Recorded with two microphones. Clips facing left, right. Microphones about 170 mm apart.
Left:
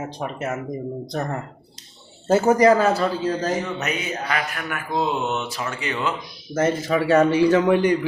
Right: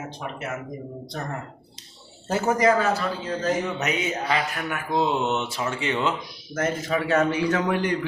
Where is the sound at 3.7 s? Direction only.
20° right (ahead or behind).